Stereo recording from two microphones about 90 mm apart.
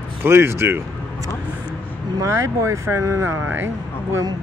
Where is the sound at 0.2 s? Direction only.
30° right (ahead or behind).